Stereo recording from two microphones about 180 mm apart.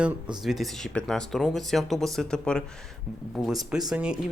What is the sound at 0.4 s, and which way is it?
Speech, centre (ahead or behind).